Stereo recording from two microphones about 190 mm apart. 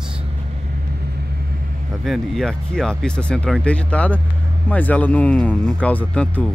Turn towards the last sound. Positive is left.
turn(degrees=5)  # may be behind; listen again after turning